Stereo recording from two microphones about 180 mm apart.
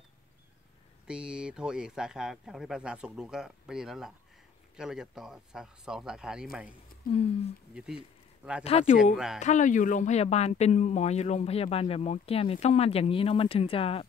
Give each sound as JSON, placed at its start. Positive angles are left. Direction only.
{"t": 1.0, "sound": "speech", "side_deg": -5}
{"t": 7.0, "sound": "speech", "side_deg": 55}
{"t": 7.7, "sound": "speech", "side_deg": -5}
{"t": 8.6, "sound": "speech", "side_deg": 40}
{"t": 9.1, "sound": "speech", "side_deg": 0}
{"t": 9.4, "sound": "speech", "side_deg": 40}